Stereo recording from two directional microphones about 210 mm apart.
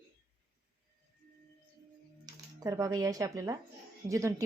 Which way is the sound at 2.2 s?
15° right (ahead or behind).